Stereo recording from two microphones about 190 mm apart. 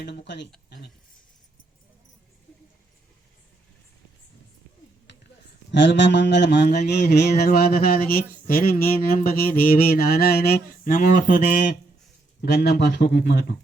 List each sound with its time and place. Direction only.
0.0 s speech: 65° left (ahead or behind)
5.1 s a sound: 70° left (ahead or behind); by 11.3 s 45° left (ahead or behind)
12.4 s speech: 55° left (ahead or behind)